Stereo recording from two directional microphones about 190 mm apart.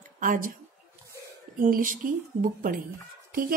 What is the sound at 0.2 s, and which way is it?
Speech, 45° right (ahead or behind).